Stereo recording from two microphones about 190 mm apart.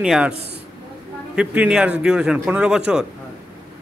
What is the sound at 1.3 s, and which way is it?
Speech, 5° right (ahead or behind).